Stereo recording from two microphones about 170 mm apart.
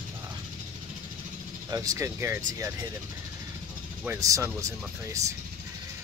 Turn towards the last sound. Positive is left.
turn(degrees=-20)  # may be behind; listen again after turning